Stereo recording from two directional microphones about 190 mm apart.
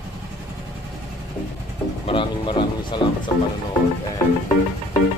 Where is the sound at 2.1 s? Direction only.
25° left (ahead or behind).